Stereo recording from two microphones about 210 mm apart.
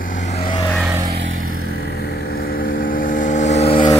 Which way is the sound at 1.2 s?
65° right (ahead or behind).